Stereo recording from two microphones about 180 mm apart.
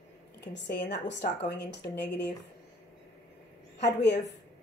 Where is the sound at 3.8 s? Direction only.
70° left (ahead or behind).